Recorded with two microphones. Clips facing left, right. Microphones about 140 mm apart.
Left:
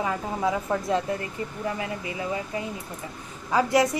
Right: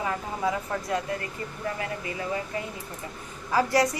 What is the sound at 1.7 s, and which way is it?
A woman's voice, 20° left (ahead or behind).